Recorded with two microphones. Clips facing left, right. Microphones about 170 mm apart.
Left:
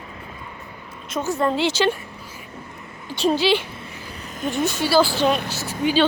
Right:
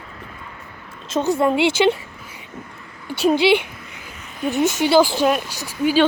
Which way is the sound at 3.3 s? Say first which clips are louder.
Right 4 dB; 15° right (ahead or behind).